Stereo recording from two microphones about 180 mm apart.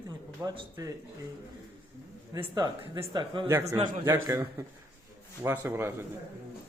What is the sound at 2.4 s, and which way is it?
Speech, 30° right (ahead or behind).